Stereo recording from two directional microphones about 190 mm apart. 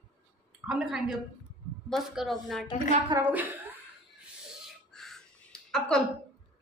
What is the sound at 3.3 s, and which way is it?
Speech, 10° right (ahead or behind).